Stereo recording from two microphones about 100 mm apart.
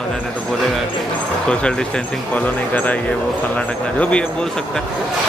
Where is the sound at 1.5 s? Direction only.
10° left (ahead or behind).